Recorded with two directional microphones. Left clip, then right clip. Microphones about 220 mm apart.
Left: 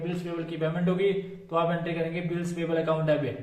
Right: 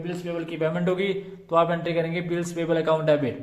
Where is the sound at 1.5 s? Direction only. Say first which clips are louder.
Right 6 dB; 45° right (ahead or behind).